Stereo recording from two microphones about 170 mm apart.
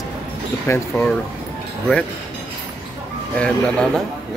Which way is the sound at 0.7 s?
15° left (ahead or behind).